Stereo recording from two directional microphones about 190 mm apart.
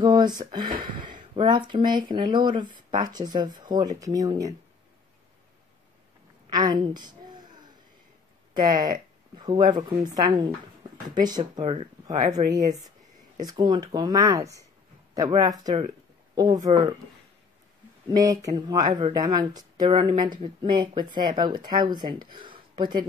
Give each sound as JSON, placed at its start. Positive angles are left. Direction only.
{"t": 0.0, "sound": "speech", "side_deg": -20}
{"t": 6.5, "sound": "a sound", "side_deg": -20}
{"t": 8.6, "sound": "speech", "side_deg": -20}
{"t": 18.0, "sound": "speech", "side_deg": -20}